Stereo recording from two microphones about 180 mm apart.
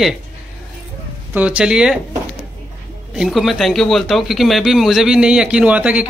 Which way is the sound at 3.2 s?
Centre (ahead or behind).